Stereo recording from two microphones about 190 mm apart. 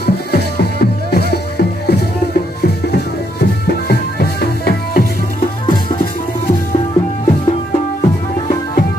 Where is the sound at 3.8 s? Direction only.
55° left (ahead or behind).